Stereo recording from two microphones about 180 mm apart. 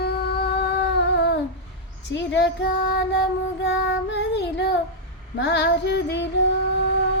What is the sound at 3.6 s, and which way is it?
Child singing, 70° left (ahead or behind).